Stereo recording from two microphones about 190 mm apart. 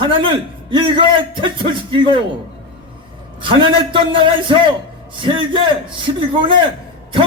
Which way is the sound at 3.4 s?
25° right (ahead or behind).